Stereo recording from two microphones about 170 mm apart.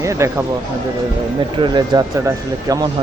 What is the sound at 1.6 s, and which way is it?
Speech, 25° right (ahead or behind).